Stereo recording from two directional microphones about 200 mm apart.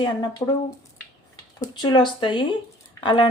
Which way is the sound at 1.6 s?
20° left (ahead or behind).